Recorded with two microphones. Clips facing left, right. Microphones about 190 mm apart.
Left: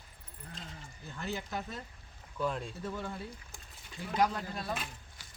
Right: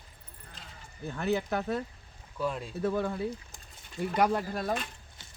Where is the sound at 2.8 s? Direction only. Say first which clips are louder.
Right 10 dB; 60° right (ahead or behind).